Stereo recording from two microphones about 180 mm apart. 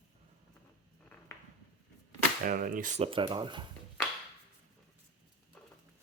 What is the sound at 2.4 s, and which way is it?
Speech, 50° right (ahead or behind).